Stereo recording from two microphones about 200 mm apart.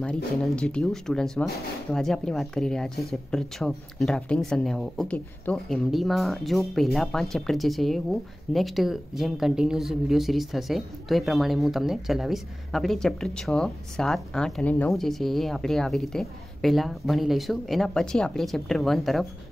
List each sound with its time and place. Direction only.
0.0 s speech: 5° left (ahead or behind)